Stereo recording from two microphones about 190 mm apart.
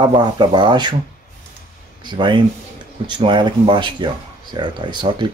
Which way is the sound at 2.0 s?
25° right (ahead or behind).